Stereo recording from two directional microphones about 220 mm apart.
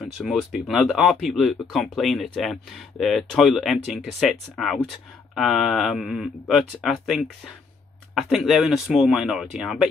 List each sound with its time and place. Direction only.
0.0 s speech: centre (ahead or behind)